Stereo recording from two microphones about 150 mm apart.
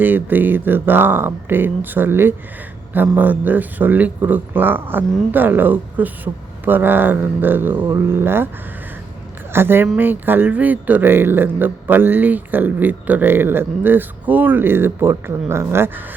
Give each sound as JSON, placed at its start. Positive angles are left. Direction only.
{"t": 0.0, "sound": "speech", "side_deg": -10}
{"t": 9.5, "sound": "speech", "side_deg": -15}